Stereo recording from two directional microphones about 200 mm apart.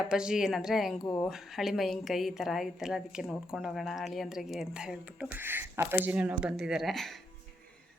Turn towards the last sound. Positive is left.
turn(degrees=0)  # may be behind; listen again after turning